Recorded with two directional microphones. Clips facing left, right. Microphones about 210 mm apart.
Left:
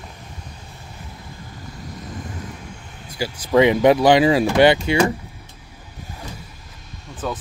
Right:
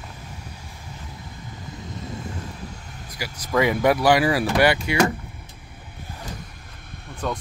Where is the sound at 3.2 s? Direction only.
25° left (ahead or behind).